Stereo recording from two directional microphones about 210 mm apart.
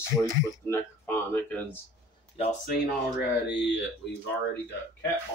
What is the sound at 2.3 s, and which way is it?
Speech, 35° left (ahead or behind).